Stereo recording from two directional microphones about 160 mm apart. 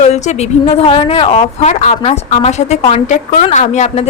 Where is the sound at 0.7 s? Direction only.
35° left (ahead or behind).